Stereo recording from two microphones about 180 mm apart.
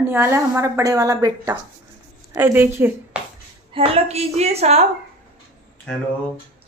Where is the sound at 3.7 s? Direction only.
30° right (ahead or behind).